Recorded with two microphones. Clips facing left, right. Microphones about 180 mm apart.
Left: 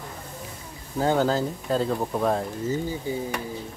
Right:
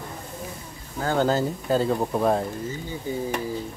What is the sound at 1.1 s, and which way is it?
Speech, centre (ahead or behind).